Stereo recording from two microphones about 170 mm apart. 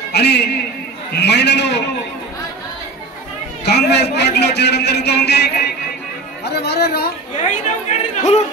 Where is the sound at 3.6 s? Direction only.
80° left.